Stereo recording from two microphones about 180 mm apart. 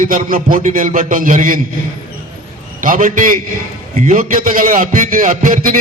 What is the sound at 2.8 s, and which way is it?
A man's voice, 45° right (ahead or behind).